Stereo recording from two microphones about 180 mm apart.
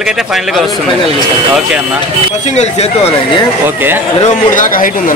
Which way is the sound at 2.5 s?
35° left (ahead or behind).